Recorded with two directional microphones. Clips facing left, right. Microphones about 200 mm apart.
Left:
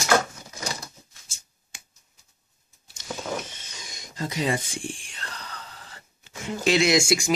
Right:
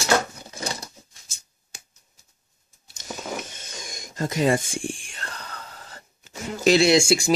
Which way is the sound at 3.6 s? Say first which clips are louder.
Right 5 dB; 50° right (ahead or behind).